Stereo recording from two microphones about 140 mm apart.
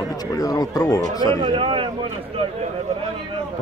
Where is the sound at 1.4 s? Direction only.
40° right (ahead or behind).